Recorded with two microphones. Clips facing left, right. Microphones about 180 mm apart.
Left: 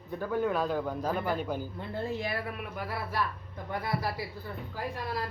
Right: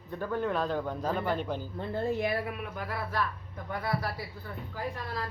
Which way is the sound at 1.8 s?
50° right (ahead or behind).